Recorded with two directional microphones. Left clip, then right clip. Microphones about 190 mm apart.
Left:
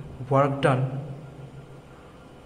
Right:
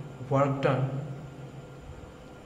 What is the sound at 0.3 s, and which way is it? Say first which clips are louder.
Speech: left 4 dB; 35° left (ahead or behind).